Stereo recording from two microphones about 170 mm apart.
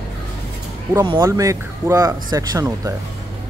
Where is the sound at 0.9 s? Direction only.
25° right (ahead or behind).